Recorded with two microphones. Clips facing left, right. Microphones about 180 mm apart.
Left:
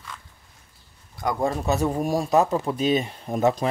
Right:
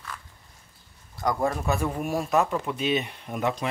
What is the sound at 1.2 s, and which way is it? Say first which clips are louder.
Speech: left 1 dB; 20° left (ahead or behind).